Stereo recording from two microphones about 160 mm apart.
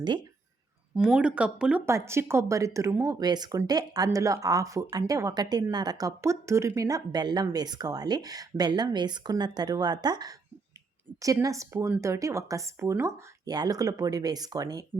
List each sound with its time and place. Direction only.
0.9 s speech: 5° right (ahead or behind)
1.8 s speech: 15° right (ahead or behind)